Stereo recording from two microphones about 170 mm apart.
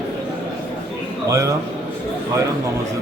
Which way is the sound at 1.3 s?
20° right (ahead or behind).